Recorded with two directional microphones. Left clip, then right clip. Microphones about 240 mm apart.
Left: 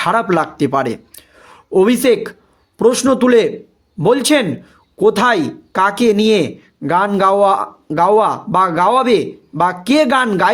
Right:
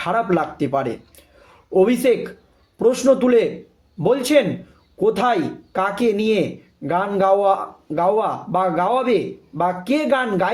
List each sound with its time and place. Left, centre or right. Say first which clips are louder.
0.0 s speech: left 5 dB; left